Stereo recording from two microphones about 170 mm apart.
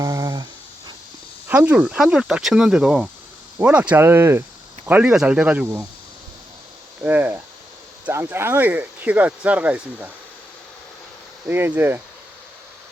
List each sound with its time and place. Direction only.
0.0 s a sound: 20° right (ahead or behind)
1.5 s speech: 10° right (ahead or behind)
7.0 s speech: 10° right (ahead or behind)
11.4 s speech: 10° right (ahead or behind)